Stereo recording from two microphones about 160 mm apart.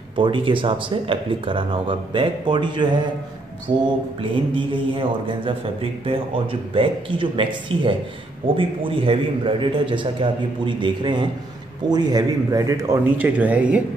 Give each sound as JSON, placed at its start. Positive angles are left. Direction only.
{"t": 0.1, "sound": "a man's voice", "side_deg": -30}